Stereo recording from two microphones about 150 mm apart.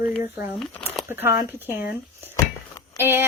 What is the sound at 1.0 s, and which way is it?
Speech, 15° right (ahead or behind).